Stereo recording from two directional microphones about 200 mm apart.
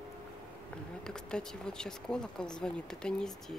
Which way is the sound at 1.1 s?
5° left (ahead or behind).